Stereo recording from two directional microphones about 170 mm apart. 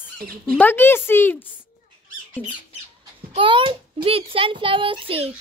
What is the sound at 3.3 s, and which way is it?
A child's voice, 30° right (ahead or behind).